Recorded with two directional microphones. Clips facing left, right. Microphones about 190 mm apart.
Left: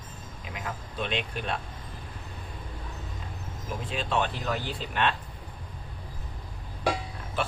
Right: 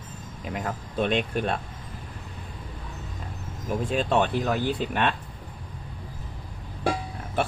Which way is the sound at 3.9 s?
50° right (ahead or behind).